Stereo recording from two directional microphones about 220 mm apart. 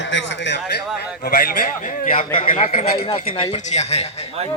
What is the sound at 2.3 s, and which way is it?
A man's voice, 30° left (ahead or behind).